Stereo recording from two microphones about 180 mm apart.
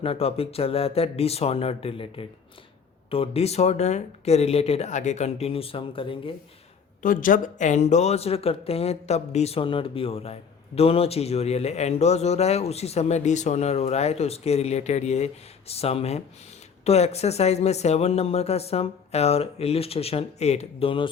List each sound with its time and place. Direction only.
0.0 s speech: 30° left (ahead or behind)
7.0 s speech: 50° left (ahead or behind); by 21.1 s 30° left (ahead or behind)